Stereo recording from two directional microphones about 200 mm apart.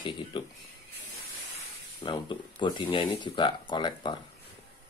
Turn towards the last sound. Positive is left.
turn(degrees=25)  # may be behind; listen again after turning